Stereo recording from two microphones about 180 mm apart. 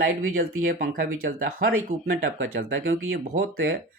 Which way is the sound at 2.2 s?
90° right.